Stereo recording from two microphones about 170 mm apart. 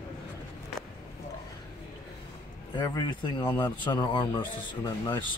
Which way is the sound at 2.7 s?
25° left (ahead or behind).